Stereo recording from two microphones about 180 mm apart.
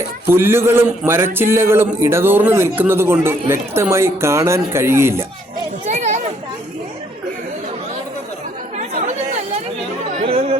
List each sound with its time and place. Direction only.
0.3 s a man's voice: 15° right (ahead or behind)
5.8 s children playing: 40° right (ahead or behind)
10.2 s chatter: 35° right (ahead or behind)